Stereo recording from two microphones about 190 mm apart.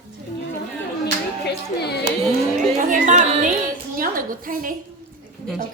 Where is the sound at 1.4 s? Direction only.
60° left (ahead or behind).